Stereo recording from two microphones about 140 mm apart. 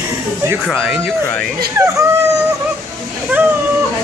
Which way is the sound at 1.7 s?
20° right (ahead or behind).